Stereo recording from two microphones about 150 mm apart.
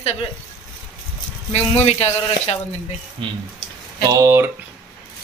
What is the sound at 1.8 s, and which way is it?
Speech, 45° left (ahead or behind).